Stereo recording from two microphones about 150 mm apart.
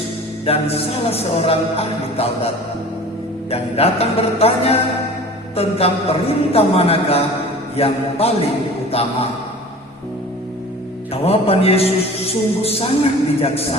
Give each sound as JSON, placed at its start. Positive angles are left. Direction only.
{"t": 0.4, "sound": "a man's voice", "side_deg": 40}
{"t": 3.5, "sound": "a man's voice", "side_deg": 40}
{"t": 11.1, "sound": "a man's voice", "side_deg": 40}